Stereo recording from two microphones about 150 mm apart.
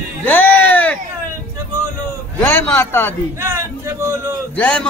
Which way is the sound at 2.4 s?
15° left (ahead or behind).